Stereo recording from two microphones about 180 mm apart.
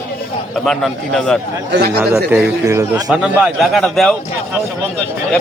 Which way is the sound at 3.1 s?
Centre (ahead or behind).